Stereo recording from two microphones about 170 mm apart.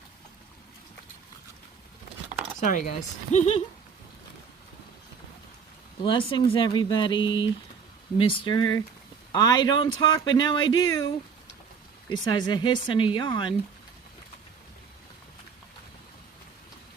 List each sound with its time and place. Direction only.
2.6 s speech: 45° left (ahead or behind)
6.0 s speech: 30° left (ahead or behind)
7.2 s a sound: 90° left
8.2 s speech: 30° left (ahead or behind)